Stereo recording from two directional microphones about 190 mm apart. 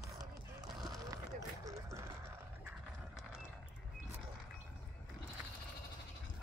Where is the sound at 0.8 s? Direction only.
20° right (ahead or behind).